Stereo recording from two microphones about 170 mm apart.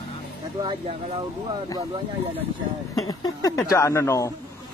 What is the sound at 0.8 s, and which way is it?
Speech, 40° right (ahead or behind).